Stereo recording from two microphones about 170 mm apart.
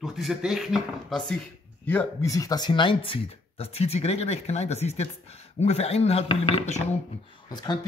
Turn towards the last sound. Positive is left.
turn(degrees=25)  # may be behind; listen again after turning